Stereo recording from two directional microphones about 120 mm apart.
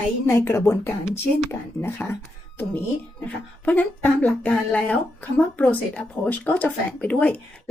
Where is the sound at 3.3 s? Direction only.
15° left (ahead or behind).